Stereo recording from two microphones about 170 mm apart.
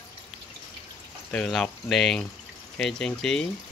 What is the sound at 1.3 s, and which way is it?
Speech, 5° left (ahead or behind).